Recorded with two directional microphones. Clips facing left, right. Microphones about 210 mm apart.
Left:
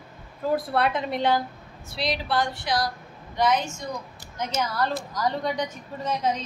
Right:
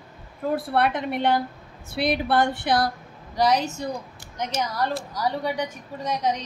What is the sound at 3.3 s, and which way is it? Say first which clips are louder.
Speech: right 2 dB; 35° right (ahead or behind).